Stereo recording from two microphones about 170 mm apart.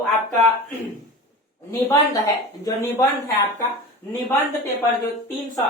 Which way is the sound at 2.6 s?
20° left (ahead or behind).